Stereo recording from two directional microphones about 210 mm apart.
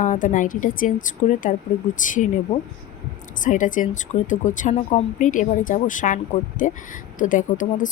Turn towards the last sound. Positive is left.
turn(degrees=40)  # may be behind; listen again after turning